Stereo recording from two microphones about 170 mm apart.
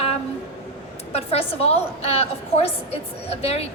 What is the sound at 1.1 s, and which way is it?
A woman's voice, 35° left (ahead or behind).